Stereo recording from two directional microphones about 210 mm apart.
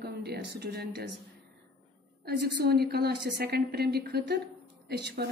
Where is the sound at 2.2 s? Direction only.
50° right (ahead or behind).